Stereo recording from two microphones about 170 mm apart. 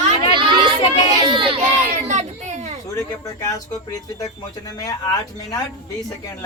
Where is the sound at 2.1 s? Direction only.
45° right (ahead or behind).